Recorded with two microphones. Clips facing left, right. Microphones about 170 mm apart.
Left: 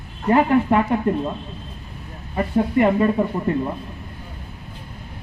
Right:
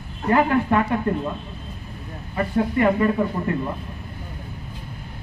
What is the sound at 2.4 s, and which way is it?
Speech, 20° left (ahead or behind).